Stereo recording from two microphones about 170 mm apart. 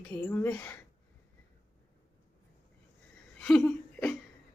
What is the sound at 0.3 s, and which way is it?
Speech, 10° left (ahead or behind).